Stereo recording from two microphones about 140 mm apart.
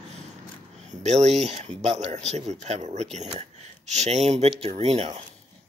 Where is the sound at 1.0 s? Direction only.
55° right (ahead or behind).